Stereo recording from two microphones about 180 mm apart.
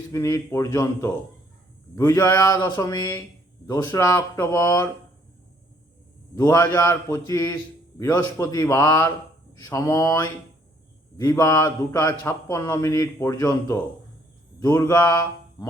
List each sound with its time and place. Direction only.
0.1 s a man's voice: 20° left (ahead or behind)
6.3 s a man's voice: 20° left (ahead or behind)